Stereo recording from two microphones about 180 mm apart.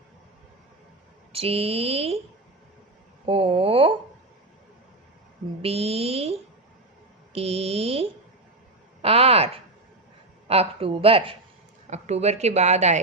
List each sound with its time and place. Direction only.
1.3 s a woman's voice: 35° right (ahead or behind)
3.2 s a woman's voice: 30° right (ahead or behind)
5.6 s a woman's voice: 35° right (ahead or behind)